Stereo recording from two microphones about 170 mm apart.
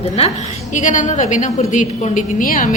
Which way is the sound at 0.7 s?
50° left (ahead or behind).